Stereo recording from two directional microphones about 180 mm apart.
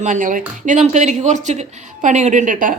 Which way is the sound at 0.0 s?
45° right (ahead or behind).